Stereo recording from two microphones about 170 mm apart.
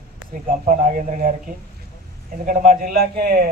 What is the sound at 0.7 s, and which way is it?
Speech, 50° right (ahead or behind).